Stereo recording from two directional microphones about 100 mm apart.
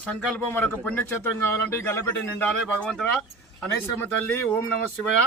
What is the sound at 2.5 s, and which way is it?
A man's voice, 10° left (ahead or behind).